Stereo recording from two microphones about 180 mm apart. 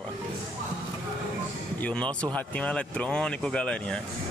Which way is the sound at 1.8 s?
5° left (ahead or behind).